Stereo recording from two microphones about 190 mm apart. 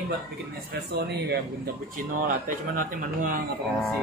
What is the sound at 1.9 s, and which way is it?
A man's voice, 45° right (ahead or behind).